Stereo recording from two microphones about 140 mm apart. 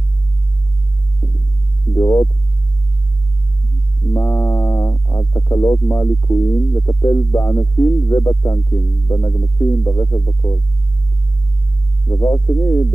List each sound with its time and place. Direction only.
1.2 s heart sounds: 30° left (ahead or behind)
2.0 s speech: 25° left (ahead or behind)
4.1 s speech: 20° left (ahead or behind)
12.1 s speech: 25° left (ahead or behind)